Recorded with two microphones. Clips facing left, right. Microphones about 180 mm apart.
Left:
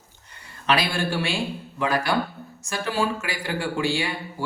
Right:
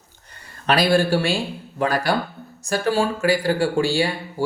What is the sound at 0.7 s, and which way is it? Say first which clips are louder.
Speech: right 6 dB; 40° right (ahead or behind).